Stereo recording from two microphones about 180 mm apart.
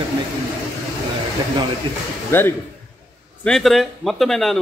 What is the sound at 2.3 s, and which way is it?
Speech, 15° left (ahead or behind).